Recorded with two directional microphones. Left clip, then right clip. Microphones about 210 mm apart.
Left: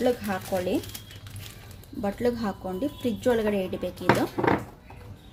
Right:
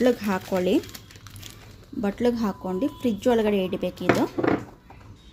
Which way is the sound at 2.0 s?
30° right (ahead or behind).